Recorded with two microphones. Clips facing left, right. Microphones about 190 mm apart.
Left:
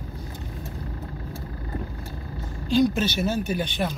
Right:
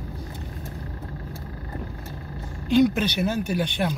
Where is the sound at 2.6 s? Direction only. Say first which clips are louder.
Right 2 dB; 55° right (ahead or behind).